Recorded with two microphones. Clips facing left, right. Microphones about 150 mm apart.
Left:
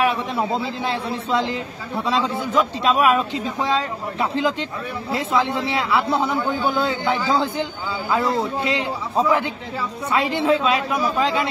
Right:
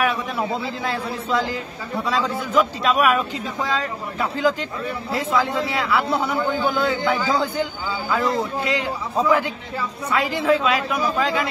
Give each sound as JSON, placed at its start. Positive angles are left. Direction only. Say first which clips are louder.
{"t": 0.0, "sound": "a man's voice", "louder": "left 2 dB", "side_deg": 25}
{"t": 10.1, "sound": "a man's voice", "louder": "left 1 dB", "side_deg": 30}